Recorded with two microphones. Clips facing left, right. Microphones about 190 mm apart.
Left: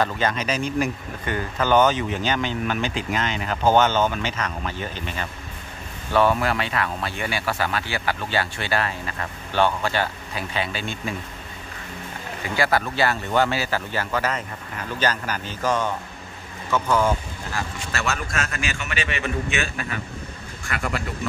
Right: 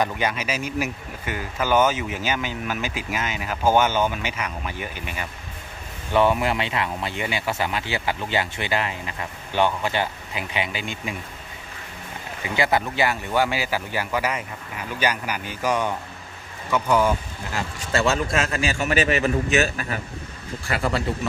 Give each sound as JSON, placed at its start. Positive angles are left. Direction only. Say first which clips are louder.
{"t": 0.0, "sound": "speech", "louder": "left 1 dB", "side_deg": -10}
{"t": 12.4, "sound": "a man's voice", "louder": "even", "side_deg": -20}